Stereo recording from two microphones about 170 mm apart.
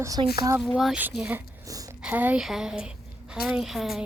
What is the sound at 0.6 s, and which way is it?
Speech, centre (ahead or behind).